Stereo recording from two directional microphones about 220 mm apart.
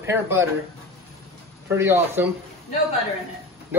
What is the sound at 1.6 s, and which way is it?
Speech, 10° right (ahead or behind).